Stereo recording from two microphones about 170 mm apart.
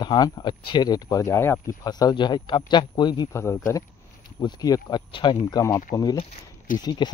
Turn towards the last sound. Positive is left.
turn(degrees=25)  # may be behind; listen again after turning